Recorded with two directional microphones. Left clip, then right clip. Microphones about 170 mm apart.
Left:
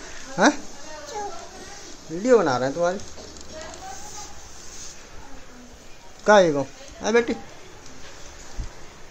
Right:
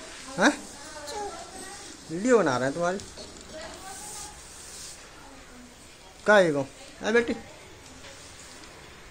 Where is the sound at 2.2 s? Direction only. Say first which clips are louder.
Left 4 dB; 5° right (ahead or behind).